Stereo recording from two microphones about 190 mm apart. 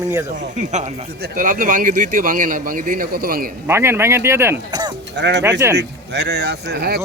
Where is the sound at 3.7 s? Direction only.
15° right (ahead or behind).